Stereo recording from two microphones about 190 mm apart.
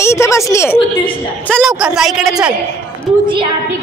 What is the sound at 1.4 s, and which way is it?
Speech, centre (ahead or behind).